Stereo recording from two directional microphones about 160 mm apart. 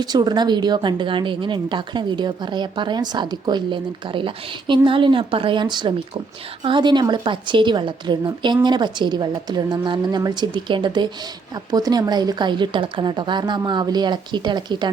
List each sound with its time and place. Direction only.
0.0 s a woman's voice: 25° right (ahead or behind)